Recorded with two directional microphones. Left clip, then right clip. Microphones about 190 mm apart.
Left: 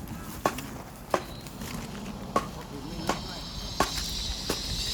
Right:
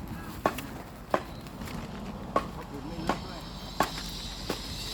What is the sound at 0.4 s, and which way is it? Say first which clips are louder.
Walk: left 1 dB; 55° left (ahead or behind).